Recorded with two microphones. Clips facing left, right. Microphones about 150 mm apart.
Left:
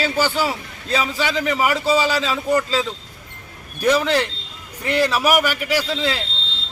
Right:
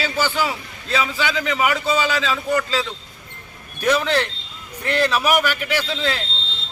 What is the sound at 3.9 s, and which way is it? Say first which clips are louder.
A man's voice: left 1 dB; 10° left (ahead or behind).